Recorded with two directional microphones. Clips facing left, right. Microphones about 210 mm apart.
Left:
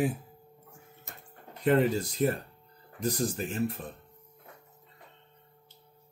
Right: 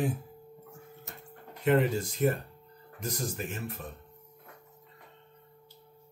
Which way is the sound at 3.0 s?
30° left (ahead or behind).